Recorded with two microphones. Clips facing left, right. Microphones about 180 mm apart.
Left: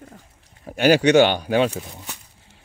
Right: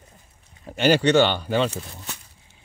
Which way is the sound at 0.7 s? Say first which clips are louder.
Left 3 dB; 10° left (ahead or behind).